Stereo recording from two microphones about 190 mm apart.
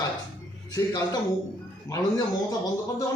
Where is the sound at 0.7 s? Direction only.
15° left (ahead or behind).